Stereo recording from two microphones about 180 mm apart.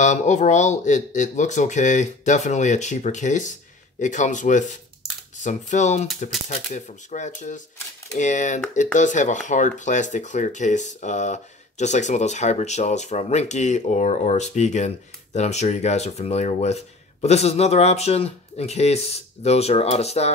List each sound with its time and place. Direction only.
0.0 s speech: 40° left (ahead or behind)